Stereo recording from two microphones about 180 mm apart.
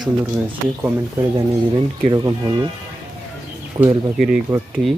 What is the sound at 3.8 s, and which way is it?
Speech, 25° right (ahead or behind).